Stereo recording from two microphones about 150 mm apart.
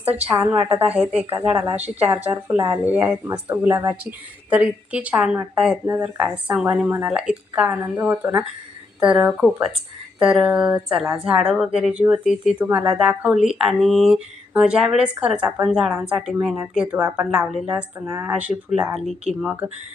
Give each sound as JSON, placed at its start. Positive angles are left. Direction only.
{"t": 0.0, "sound": "speech", "side_deg": -10}
{"t": 2.8, "sound": "speech", "side_deg": -10}